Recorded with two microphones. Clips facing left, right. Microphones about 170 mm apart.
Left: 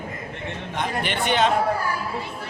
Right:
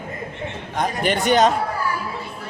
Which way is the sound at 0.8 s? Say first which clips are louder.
Right 5 dB; 40° right (ahead or behind).